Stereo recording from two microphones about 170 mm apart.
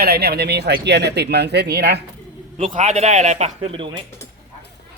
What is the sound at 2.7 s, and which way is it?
Speech, 45° right (ahead or behind).